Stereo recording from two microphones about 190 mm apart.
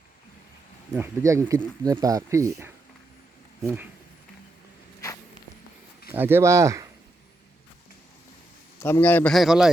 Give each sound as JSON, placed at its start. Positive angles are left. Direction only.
{"t": 0.9, "sound": "speech", "side_deg": -15}
{"t": 6.1, "sound": "speech", "side_deg": -10}
{"t": 8.8, "sound": "a man's voice", "side_deg": 10}